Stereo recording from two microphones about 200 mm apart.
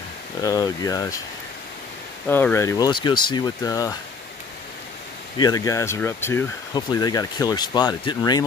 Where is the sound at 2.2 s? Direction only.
10° left (ahead or behind).